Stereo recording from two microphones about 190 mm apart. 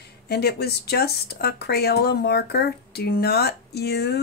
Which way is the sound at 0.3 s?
55° left (ahead or behind).